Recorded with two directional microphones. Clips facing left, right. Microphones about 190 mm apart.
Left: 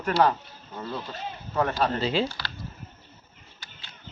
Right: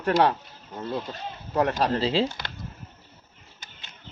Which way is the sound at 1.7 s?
30° right (ahead or behind).